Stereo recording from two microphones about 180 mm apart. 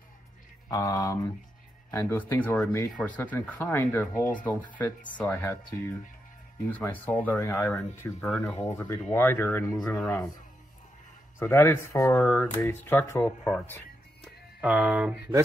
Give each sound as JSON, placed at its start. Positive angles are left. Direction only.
{"t": 0.7, "sound": "speech", "side_deg": 20}
{"t": 9.8, "sound": "speech", "side_deg": 0}
{"t": 11.3, "sound": "speech", "side_deg": 15}
{"t": 14.6, "sound": "speech", "side_deg": -5}